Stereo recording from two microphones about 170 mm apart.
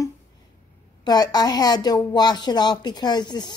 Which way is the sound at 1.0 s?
25° left (ahead or behind).